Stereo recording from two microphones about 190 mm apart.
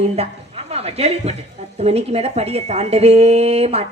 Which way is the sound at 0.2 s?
30° right (ahead or behind).